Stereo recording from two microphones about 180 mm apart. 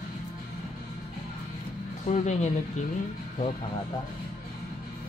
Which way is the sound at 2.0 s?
40° left (ahead or behind).